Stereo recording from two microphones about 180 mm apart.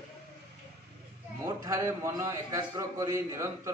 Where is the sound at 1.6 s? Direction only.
15° right (ahead or behind).